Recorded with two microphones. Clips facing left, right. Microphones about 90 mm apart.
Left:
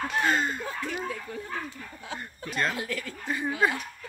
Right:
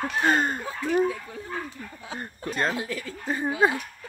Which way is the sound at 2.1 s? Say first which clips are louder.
Right 2 dB; 35° right (ahead or behind).